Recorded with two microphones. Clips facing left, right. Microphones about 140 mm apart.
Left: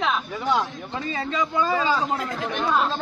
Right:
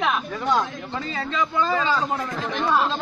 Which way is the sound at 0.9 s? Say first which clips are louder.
Left 2 dB; 20° left (ahead or behind).